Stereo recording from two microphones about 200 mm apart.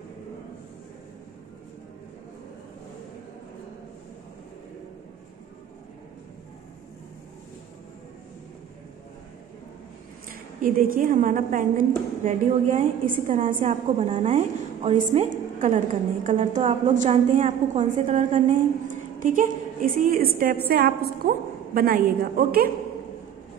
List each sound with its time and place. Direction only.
10.3 s a woman's voice: 45° right (ahead or behind)